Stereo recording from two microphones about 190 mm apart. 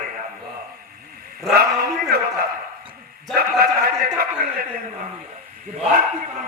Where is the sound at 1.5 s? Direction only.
55° right (ahead or behind).